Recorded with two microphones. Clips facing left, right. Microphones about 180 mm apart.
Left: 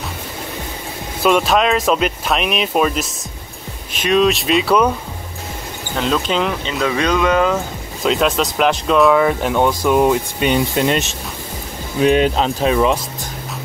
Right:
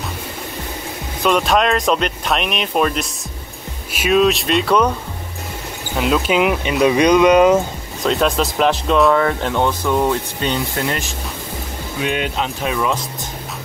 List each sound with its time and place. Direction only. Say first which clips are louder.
1.2 s speech: left 1 dB; centre (ahead or behind)
5.9 s speech: right 2 dB; 5° right (ahead or behind)
8.0 s speech: left 1 dB; centre (ahead or behind); by 11.1 s 20° left (ahead or behind)
12.0 s speech: left 7 dB; 35° left (ahead or behind)